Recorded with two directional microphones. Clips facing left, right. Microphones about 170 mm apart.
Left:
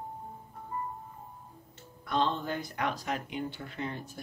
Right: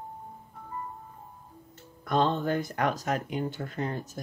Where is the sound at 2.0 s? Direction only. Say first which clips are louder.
Right 4 dB; 45° right (ahead or behind).